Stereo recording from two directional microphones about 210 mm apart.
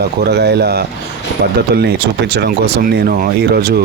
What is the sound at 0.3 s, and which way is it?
Speech, 50° right (ahead or behind).